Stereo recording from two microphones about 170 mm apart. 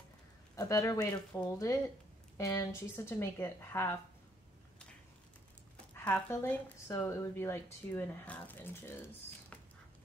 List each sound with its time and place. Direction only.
0.6 s speech: 20° left (ahead or behind)
5.9 s speech: 10° left (ahead or behind)